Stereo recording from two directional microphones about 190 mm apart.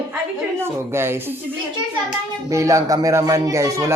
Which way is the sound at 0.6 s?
15° right (ahead or behind).